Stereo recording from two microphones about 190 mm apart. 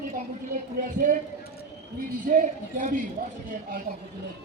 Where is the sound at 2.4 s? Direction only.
45° right (ahead or behind).